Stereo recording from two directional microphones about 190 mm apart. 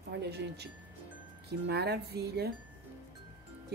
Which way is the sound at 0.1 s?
60° right (ahead or behind).